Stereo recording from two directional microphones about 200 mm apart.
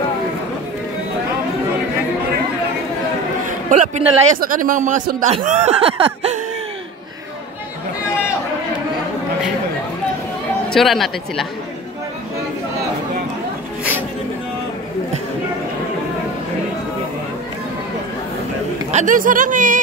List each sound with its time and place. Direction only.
3.7 s a sound: 35° right (ahead or behind)
4.4 s speech: 45° right (ahead or behind); by 6.3 s 30° right (ahead or behind)
10.7 s speech: centre (ahead or behind)
18.9 s speech: 40° right (ahead or behind)